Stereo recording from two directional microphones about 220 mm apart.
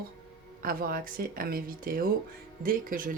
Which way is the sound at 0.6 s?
40° right (ahead or behind).